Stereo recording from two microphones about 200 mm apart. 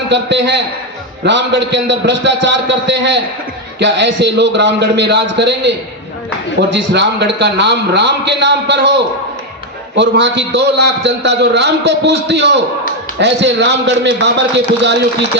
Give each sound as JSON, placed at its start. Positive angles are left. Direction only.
{"t": 0.1, "sound": "a man's voice", "side_deg": -60}
{"t": 10.0, "sound": "a man's voice", "side_deg": -65}